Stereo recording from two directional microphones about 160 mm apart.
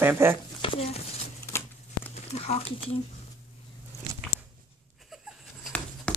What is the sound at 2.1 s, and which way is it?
Speech, 40° left (ahead or behind).